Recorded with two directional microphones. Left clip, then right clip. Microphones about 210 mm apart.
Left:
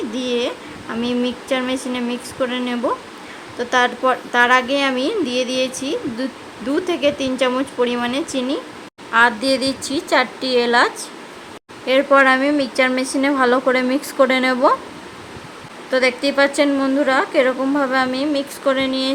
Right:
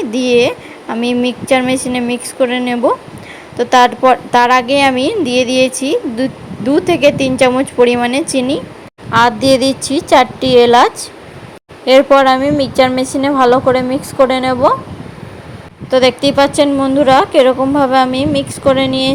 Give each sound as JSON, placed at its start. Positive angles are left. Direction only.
{"t": 0.1, "sound": "a woman's voice", "side_deg": -20}
{"t": 15.9, "sound": "a woman's voice", "side_deg": -20}